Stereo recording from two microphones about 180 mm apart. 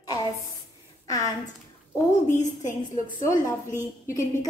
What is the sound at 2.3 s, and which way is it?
Speech, 45° left (ahead or behind).